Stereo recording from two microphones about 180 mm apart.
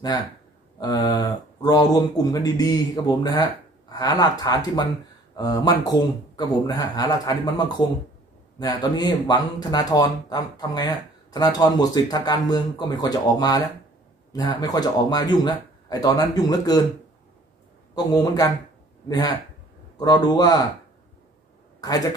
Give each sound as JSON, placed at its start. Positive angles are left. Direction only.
{"t": 0.7, "sound": "speech", "side_deg": 25}
{"t": 17.9, "sound": "speech", "side_deg": 20}